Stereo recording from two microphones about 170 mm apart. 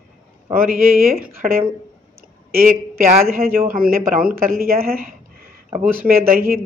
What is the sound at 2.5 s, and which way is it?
A man's voice, 55° right (ahead or behind).